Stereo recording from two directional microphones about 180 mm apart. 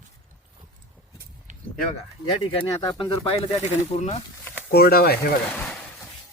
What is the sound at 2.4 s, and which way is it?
Speech, 30° left (ahead or behind).